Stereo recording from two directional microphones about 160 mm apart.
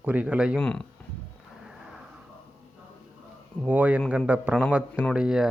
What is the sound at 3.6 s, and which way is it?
Speech, 10° right (ahead or behind).